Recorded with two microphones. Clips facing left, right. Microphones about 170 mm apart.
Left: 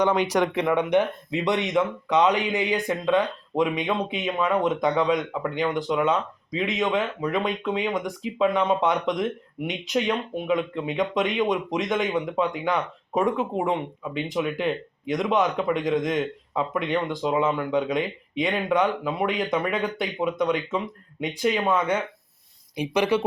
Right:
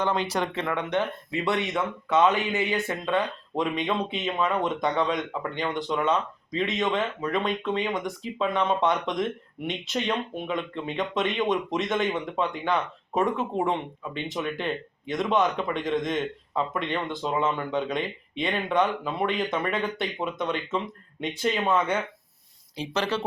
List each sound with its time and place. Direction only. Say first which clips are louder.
0.0 s speech: left 5 dB; 15° left (ahead or behind)
13.7 s speech: left 2 dB; 10° left (ahead or behind)